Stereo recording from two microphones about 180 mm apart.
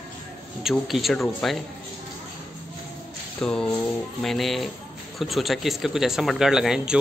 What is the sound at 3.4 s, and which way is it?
Speech, 5° left (ahead or behind).